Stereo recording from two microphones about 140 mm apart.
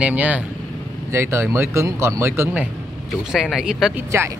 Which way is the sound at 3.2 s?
5° right (ahead or behind).